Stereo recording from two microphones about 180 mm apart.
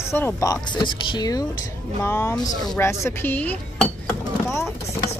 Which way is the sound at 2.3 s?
5° left (ahead or behind).